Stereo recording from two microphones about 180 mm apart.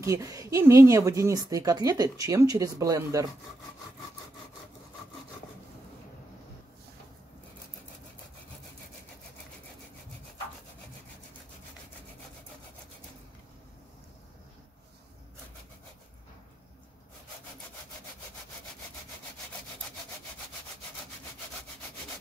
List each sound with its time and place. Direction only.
0.0 s speech: 20° right (ahead or behind)